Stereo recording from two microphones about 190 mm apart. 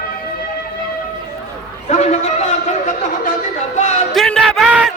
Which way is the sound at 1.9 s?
35° left (ahead or behind).